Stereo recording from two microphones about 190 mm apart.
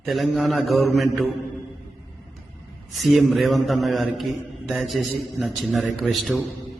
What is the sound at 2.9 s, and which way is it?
A man's voice, centre (ahead or behind).